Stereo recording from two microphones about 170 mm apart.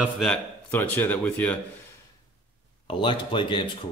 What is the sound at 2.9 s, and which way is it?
Speech, 30° left (ahead or behind).